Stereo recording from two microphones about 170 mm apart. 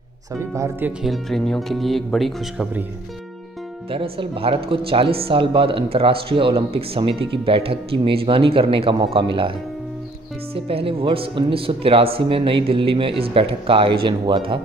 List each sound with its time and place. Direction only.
0.6 s speech: 10° right (ahead or behind)
1.0 s speech: centre (ahead or behind)
3.9 s speech: 30° right (ahead or behind)
10.5 s speech: 35° right (ahead or behind)